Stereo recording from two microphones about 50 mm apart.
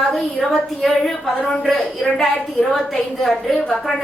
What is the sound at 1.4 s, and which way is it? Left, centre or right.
Speech, centre.